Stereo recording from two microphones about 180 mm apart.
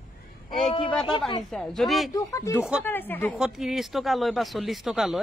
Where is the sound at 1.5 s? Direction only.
Centre (ahead or behind).